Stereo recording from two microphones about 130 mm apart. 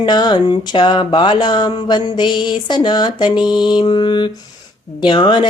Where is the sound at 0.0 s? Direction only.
35° left (ahead or behind).